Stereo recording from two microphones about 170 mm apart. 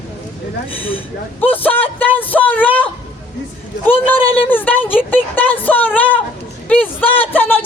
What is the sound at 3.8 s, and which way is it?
A woman's voice, 10° left (ahead or behind).